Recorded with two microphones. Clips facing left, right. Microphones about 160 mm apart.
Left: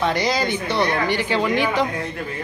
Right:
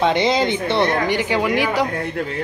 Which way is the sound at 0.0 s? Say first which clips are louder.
Right 4 dB; 25° right (ahead or behind).